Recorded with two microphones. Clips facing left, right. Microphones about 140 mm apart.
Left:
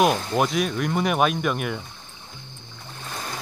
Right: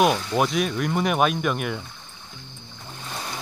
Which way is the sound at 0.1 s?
40° left (ahead or behind).